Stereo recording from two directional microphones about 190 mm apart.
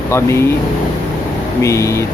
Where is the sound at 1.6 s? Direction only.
15° left (ahead or behind).